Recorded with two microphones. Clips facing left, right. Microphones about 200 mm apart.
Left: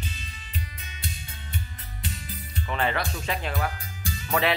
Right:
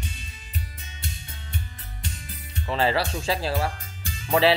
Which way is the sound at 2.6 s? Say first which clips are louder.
Right 4 dB; 30° right (ahead or behind).